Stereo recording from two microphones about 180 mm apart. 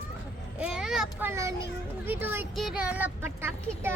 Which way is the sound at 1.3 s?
15° right (ahead or behind).